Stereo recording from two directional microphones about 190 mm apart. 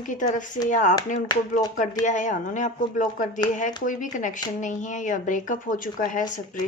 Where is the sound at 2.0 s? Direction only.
40° left (ahead or behind).